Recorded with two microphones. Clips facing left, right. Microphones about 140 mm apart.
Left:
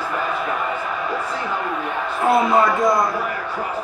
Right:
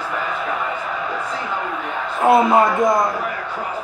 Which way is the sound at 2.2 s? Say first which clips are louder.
Right 3 dB; 20° right (ahead or behind).